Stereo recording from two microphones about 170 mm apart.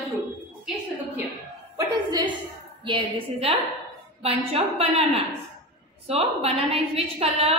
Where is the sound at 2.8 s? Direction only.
30° right (ahead or behind).